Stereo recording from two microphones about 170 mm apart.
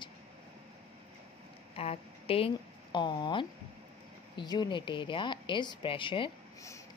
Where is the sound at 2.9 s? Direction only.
25° left (ahead or behind).